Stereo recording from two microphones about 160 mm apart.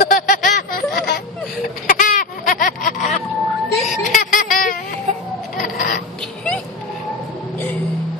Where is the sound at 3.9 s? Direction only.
55° left (ahead or behind).